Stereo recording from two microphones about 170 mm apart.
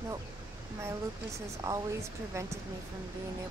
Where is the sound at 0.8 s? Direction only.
15° right (ahead or behind).